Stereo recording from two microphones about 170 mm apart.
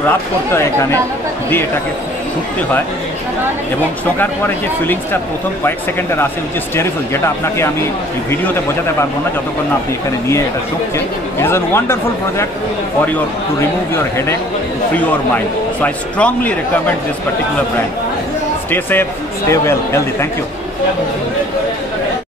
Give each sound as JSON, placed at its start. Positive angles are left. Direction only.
{"t": 0.5, "sound": "a man's voice", "side_deg": 15}
{"t": 4.8, "sound": "a man's voice", "side_deg": 10}
{"t": 11.3, "sound": "a man's voice", "side_deg": 15}
{"t": 13.6, "sound": "a man's voice", "side_deg": 15}
{"t": 18.7, "sound": "a man's voice", "side_deg": 10}